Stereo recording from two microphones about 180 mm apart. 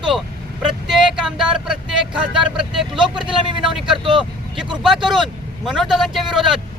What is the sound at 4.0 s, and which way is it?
Speech, 30° right (ahead or behind).